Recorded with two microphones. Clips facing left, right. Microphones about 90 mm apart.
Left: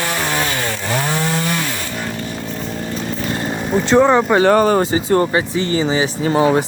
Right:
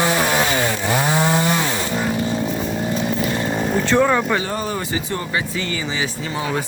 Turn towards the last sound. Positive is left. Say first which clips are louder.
# left 10 dB
turn(degrees=40)  # may be behind; listen again after turning